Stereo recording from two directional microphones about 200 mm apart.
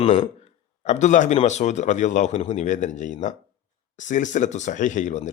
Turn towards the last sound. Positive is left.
turn(degrees=40)  # may be behind; listen again after turning